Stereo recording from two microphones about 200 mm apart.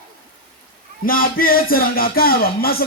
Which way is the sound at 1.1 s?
45° left (ahead or behind).